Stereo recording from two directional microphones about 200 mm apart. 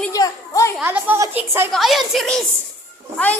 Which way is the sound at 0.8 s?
10° right (ahead or behind).